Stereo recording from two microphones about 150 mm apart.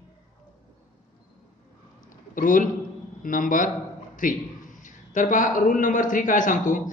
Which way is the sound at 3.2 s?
65° left (ahead or behind).